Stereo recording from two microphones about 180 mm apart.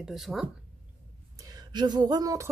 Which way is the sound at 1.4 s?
20° right (ahead or behind).